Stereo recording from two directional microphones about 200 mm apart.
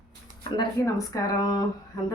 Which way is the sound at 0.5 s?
20° left (ahead or behind).